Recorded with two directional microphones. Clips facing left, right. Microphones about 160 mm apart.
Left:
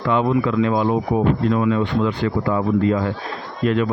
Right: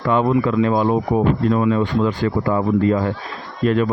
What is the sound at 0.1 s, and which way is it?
Speech, 40° right (ahead or behind).